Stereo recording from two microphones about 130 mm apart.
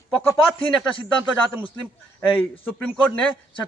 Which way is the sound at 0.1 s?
15° left (ahead or behind).